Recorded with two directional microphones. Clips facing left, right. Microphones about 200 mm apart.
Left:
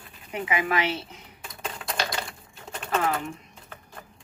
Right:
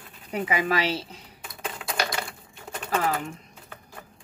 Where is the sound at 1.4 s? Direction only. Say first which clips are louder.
Even; 5° right (ahead or behind).